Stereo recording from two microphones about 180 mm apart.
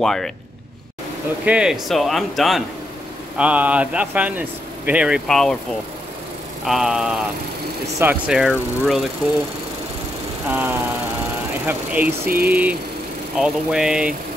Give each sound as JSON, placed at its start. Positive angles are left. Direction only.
{"t": 0.0, "sound": "speech", "side_deg": 0}
{"t": 1.4, "sound": "a man's voice", "side_deg": -5}
{"t": 6.6, "sound": "speech", "side_deg": 0}
{"t": 10.5, "sound": "a man's voice", "side_deg": -10}
{"t": 12.3, "sound": "a sound", "side_deg": -55}
{"t": 13.4, "sound": "speech", "side_deg": -5}